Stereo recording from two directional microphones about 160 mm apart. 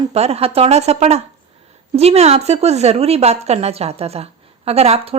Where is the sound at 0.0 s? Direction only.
40° right (ahead or behind).